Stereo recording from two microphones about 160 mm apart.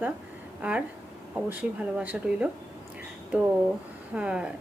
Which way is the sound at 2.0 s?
10° right (ahead or behind).